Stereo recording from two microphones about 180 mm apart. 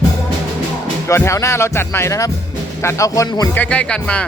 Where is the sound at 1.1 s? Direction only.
15° left (ahead or behind).